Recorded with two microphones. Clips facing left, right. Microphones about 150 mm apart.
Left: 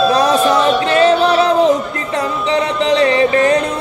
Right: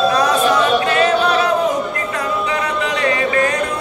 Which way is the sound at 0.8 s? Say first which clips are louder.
Left 4 dB; 30° left (ahead or behind).